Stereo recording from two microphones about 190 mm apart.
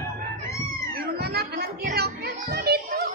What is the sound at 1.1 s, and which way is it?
Children playing, 55° right (ahead or behind).